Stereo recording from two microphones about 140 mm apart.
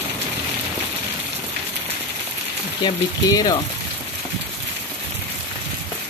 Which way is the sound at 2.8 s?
30° left (ahead or behind).